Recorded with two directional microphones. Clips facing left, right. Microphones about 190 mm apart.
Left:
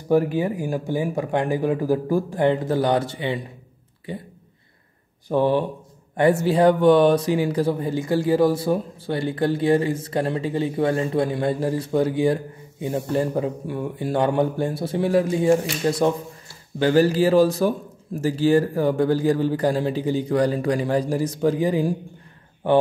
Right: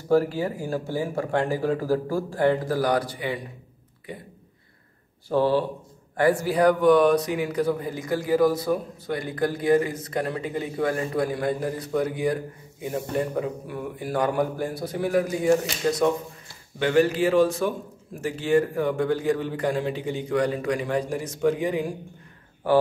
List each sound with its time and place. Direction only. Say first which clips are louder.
0.1 s speech: left 2 dB; 20° left (ahead or behind)
5.3 s a man's voice: left 2 dB; 20° left (ahead or behind)